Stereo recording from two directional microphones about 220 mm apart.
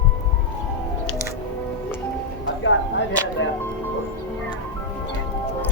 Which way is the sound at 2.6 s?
60° left (ahead or behind).